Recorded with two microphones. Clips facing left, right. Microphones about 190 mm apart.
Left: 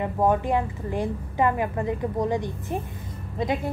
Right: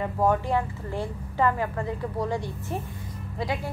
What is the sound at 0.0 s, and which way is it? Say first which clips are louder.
A woman's voice: left 2 dB; 20° left (ahead or behind).